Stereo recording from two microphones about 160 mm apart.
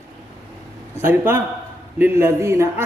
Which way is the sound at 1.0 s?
15° right (ahead or behind).